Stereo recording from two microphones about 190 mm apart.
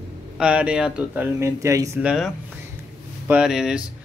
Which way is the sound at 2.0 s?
Centre (ahead or behind).